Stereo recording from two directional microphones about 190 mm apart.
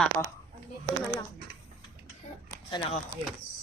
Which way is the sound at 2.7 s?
25° left (ahead or behind).